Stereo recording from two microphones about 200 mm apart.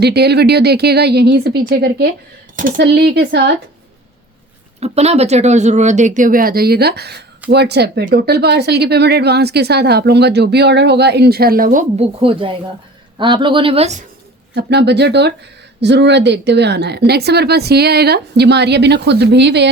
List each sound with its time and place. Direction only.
0.0 s speech: 55° right (ahead or behind)
2.8 s speech: 55° right (ahead or behind)
4.8 s speech: 30° right (ahead or behind)
12.2 s a woman's voice: 25° right (ahead or behind)
14.5 s speech: 55° right (ahead or behind)